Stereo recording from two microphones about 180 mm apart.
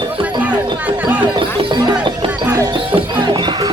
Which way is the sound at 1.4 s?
25° right (ahead or behind).